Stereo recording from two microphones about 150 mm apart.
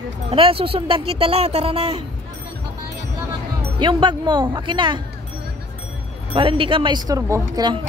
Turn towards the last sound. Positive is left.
turn(degrees=-30)  # may be behind; listen again after turning